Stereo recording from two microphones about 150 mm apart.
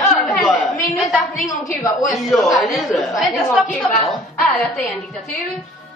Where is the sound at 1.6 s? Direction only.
60° left (ahead or behind).